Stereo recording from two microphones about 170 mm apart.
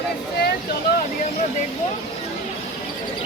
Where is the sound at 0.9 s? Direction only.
65° left (ahead or behind).